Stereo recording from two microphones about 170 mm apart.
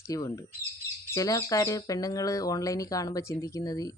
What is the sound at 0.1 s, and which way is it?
Speech, 20° left (ahead or behind).